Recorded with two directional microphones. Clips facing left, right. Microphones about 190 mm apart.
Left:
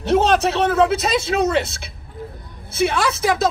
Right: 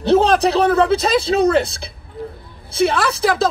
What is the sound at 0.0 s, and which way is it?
Speech, 35° right (ahead or behind).